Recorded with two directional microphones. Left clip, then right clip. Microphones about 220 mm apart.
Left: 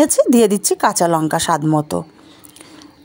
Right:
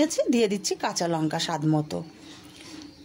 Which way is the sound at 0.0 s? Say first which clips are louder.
Left 11 dB; 35° left (ahead or behind).